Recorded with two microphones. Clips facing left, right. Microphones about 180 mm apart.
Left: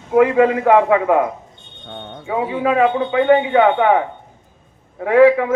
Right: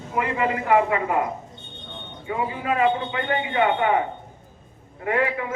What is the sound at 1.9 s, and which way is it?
A man's voice, 75° left (ahead or behind).